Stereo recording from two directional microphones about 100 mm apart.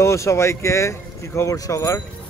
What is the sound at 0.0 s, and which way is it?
Speech, 30° left (ahead or behind).